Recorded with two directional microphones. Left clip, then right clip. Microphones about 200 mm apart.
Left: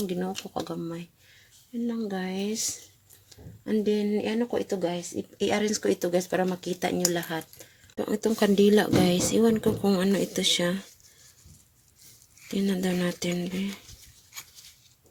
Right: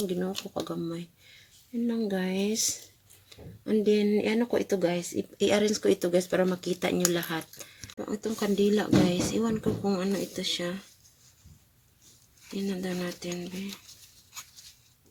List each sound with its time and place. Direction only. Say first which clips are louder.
0.1 s speech: left 1 dB; 25° left (ahead or behind)
1.9 s speech: right 2 dB; centre (ahead or behind)
7.9 s speech: left 7 dB; 35° left (ahead or behind)
12.5 s speech: left 5 dB; 40° left (ahead or behind)